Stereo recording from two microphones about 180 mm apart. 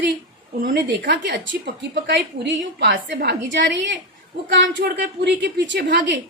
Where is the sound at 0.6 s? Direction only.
65° right (ahead or behind).